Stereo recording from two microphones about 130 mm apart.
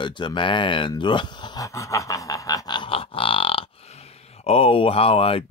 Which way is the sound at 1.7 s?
25° left (ahead or behind).